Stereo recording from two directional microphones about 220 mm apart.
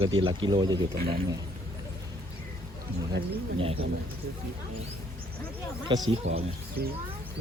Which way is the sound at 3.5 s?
25° right (ahead or behind).